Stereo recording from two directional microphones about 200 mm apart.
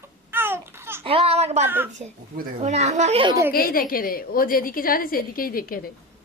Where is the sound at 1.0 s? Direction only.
30° right (ahead or behind).